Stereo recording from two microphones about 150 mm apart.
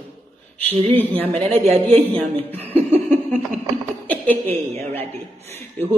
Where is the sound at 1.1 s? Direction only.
40° right (ahead or behind).